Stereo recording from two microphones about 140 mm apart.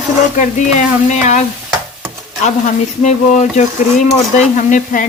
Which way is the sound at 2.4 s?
55° left (ahead or behind).